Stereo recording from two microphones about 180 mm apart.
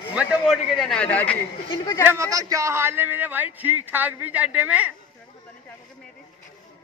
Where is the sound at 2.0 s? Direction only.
15° right (ahead or behind).